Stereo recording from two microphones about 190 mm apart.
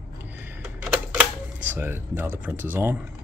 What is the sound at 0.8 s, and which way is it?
Typewriter, 5° right (ahead or behind).